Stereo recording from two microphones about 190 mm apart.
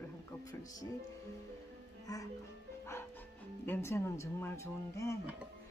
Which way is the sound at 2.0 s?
20° left (ahead or behind).